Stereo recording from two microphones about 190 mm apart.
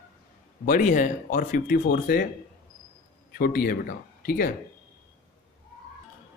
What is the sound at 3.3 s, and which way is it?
Speech, 50° left (ahead or behind).